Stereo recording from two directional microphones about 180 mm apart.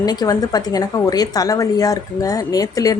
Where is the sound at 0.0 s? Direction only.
20° left (ahead or behind).